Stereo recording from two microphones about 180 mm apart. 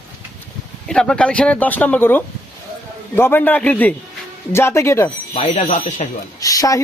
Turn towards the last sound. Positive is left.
turn(degrees=20)  # may be behind; listen again after turning